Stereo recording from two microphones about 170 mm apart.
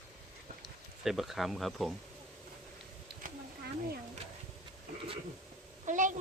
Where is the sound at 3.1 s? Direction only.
70° right (ahead or behind).